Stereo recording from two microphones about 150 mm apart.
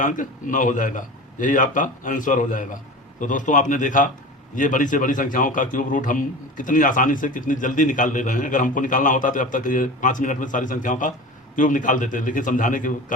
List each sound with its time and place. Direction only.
0.0 s a man's voice: 60° left (ahead or behind)